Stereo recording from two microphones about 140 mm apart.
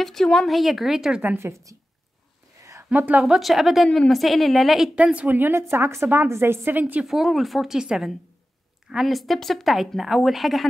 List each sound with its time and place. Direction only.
0.0 s a woman's voice: centre (ahead or behind)
1.2 s a woman's voice: 15° right (ahead or behind)
7.1 s a woman's voice: centre (ahead or behind)